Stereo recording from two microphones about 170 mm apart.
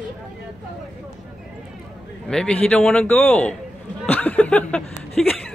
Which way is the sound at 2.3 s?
5° left (ahead or behind).